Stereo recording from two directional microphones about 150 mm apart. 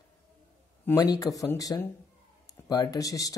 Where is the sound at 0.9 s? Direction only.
25° left (ahead or behind).